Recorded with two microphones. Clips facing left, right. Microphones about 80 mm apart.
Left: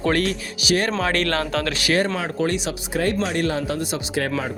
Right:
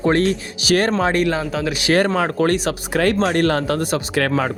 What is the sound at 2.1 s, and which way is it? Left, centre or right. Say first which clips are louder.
Speech: right 5 dB; right.